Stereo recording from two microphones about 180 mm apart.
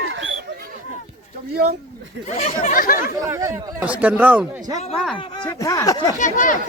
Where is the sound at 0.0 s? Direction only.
90° right.